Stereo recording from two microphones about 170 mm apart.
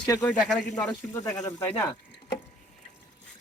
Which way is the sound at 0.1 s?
20° left (ahead or behind).